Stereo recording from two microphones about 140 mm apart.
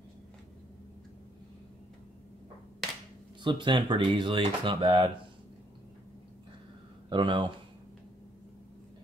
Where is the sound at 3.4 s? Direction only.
35° right (ahead or behind).